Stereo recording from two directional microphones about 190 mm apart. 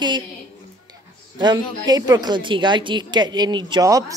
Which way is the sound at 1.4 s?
20° right (ahead or behind).